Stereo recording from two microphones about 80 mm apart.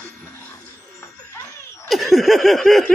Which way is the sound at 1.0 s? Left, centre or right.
Left.